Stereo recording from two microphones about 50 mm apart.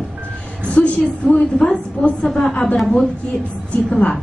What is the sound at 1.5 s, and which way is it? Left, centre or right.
A woman's voice, centre.